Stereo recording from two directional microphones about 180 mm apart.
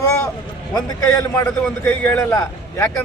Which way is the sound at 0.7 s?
20° left (ahead or behind).